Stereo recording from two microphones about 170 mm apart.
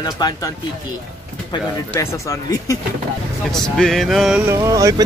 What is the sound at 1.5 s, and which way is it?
Speech, 20° left (ahead or behind).